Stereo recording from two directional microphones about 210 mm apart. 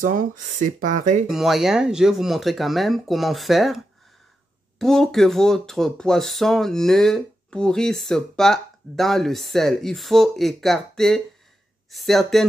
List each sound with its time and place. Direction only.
0.0 s speech: 40° right (ahead or behind)
1.2 s speech: centre (ahead or behind)